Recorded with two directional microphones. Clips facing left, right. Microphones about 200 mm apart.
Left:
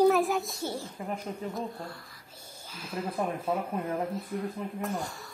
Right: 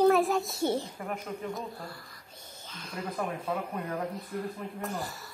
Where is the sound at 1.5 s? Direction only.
Centre (ahead or behind).